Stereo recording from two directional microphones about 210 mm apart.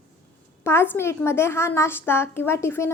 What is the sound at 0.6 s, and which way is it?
A woman's voice, 10° left (ahead or behind).